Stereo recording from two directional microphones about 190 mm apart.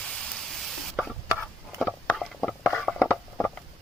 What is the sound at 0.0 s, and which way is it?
Spray, 5° left (ahead or behind).